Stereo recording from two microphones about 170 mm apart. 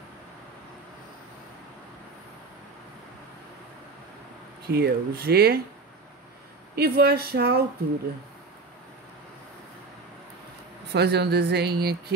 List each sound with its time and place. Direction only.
4.6 s speech: 70° right (ahead or behind)
6.7 s speech: 70° right (ahead or behind)
10.9 s speech: 75° right (ahead or behind)